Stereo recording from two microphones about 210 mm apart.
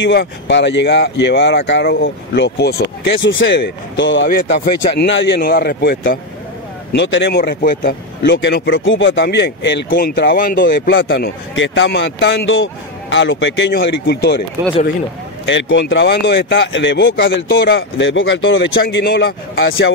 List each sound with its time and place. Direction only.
0.0 s speech: 55° left (ahead or behind)
6.9 s speech: 60° left (ahead or behind)
10.3 s speech: 40° left (ahead or behind)
10.7 s speech: 60° left (ahead or behind)
15.4 s speech: 60° left (ahead or behind)
18.8 s speech: 55° left (ahead or behind)
19.5 s speech: 65° left (ahead or behind)